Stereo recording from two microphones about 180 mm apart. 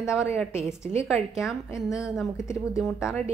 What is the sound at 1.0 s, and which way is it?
Speech, 15° left (ahead or behind).